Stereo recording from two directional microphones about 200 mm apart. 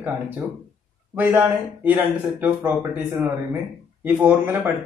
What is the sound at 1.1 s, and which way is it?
Speech, 10° right (ahead or behind).